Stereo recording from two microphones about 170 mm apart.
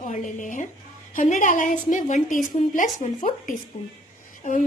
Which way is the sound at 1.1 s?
45° left (ahead or behind).